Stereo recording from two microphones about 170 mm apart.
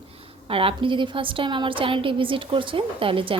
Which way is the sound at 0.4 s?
35° right (ahead or behind).